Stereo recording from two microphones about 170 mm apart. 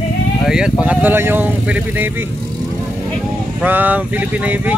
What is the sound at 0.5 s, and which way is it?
Speech, 5° right (ahead or behind).